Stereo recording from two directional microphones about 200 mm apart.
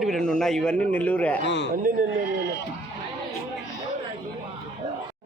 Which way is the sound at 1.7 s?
45° right (ahead or behind).